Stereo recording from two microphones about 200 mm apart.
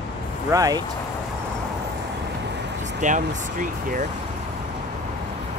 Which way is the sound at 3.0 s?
40° right (ahead or behind).